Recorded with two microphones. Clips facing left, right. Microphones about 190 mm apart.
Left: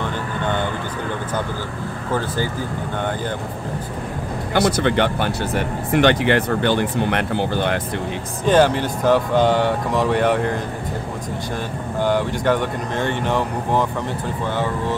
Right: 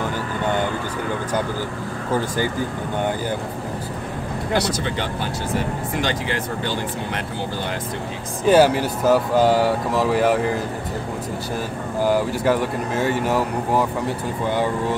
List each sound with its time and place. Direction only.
0.0 s a sound: 10° right (ahead or behind)
2.1 s speech: 15° right (ahead or behind)
4.6 s speech: 65° left (ahead or behind)
8.5 s speech: 10° right (ahead or behind)
12.0 s speech: 5° right (ahead or behind)